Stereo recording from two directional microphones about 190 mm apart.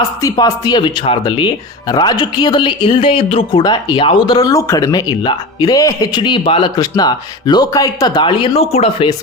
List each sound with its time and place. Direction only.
0.2 s speech: 20° left (ahead or behind)